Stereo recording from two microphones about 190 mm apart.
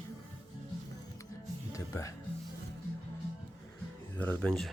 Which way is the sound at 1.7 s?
15° left (ahead or behind).